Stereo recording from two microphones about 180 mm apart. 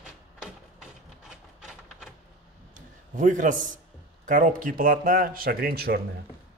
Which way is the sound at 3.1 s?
45° right (ahead or behind).